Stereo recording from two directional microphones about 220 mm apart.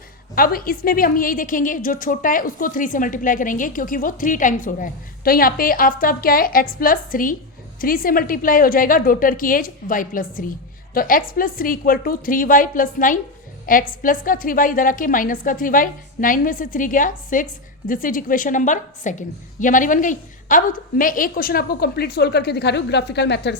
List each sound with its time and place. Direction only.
0.3 s a woman's voice: 40° left (ahead or behind)